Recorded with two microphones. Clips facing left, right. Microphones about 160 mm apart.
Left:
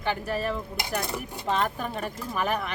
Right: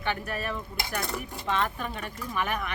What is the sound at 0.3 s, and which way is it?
Speech, 35° left (ahead or behind).